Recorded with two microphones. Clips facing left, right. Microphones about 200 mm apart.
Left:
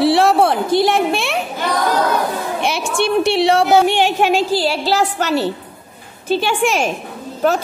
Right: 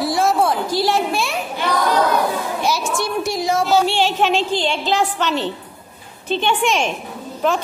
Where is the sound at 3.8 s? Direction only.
15° left (ahead or behind).